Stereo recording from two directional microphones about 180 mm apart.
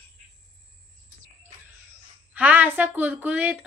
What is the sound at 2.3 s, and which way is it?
A woman's voice, 10° right (ahead or behind).